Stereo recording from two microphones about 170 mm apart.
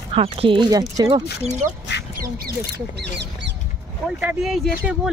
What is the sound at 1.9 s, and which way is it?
Duck, 90° left.